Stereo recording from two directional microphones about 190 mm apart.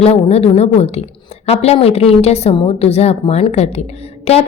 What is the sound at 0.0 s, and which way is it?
A woman's voice, 35° left (ahead or behind).